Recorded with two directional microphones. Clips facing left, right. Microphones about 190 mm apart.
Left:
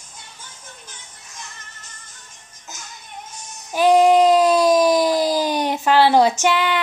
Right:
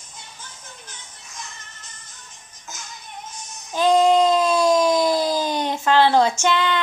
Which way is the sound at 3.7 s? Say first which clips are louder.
Left 3 dB; 10° left (ahead or behind).